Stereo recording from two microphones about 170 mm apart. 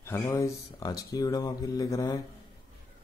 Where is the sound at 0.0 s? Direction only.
15° left (ahead or behind).